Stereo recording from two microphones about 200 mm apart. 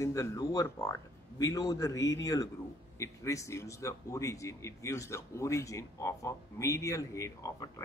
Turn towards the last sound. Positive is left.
turn(degrees=15)  # may be behind; listen again after turning